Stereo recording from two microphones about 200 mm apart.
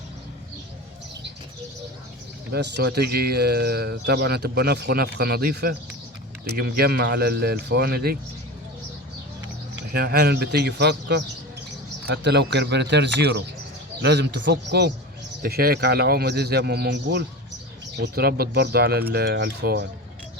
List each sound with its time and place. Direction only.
2.5 s speech: 55° right (ahead or behind)
9.9 s speech: 50° right (ahead or behind)